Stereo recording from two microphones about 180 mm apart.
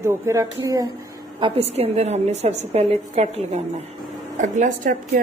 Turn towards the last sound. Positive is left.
turn(degrees=-50)  # may be behind; listen again after turning